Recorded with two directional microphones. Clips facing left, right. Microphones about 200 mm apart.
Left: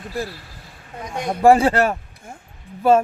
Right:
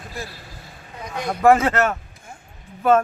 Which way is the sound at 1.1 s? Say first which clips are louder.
Left 2 dB; 25° left (ahead or behind).